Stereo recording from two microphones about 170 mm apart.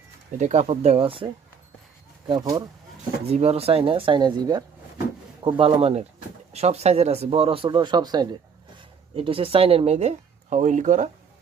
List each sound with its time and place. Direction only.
0.3 s speech: 45° right (ahead or behind); by 2.6 s 20° right (ahead or behind)
3.2 s speech: 35° right (ahead or behind)